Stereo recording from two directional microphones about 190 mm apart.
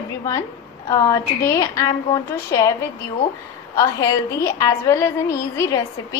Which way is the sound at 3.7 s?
15° left (ahead or behind).